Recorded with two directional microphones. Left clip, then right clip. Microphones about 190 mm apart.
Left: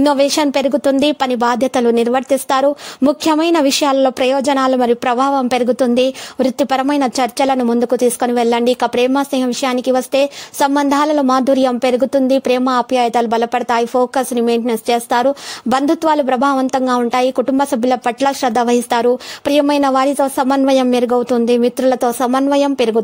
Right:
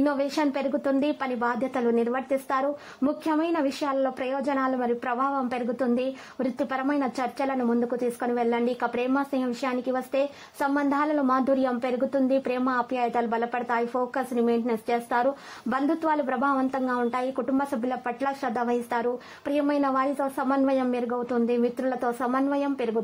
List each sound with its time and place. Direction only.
0.0 s a woman's voice: 45° left (ahead or behind)